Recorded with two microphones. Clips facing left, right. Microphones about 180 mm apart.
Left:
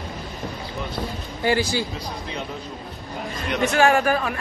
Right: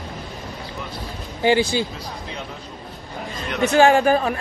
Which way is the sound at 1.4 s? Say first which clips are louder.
Right 4 dB; 20° right (ahead or behind).